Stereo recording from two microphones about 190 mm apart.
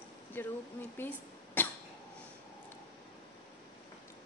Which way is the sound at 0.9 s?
10° left (ahead or behind).